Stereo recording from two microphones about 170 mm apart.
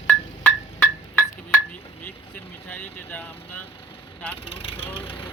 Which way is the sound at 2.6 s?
10° left (ahead or behind).